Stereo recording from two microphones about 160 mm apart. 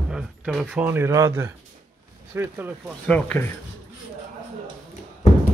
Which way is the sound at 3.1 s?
10° left (ahead or behind).